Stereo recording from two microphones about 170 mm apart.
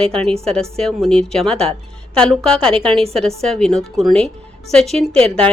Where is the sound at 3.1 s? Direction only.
5° left (ahead or behind).